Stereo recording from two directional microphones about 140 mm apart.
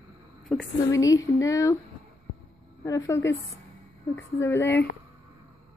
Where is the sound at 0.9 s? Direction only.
25° left (ahead or behind).